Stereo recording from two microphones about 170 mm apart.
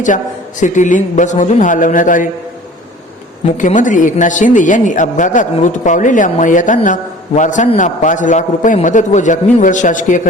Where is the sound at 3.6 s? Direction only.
50° left (ahead or behind).